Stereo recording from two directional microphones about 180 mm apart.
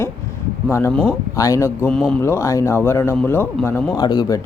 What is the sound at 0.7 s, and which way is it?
A man's voice, 10° left (ahead or behind).